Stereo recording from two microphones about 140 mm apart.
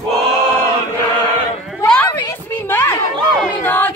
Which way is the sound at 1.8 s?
10° left (ahead or behind).